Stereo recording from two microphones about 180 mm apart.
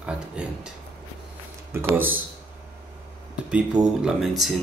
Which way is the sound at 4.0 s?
5° right (ahead or behind).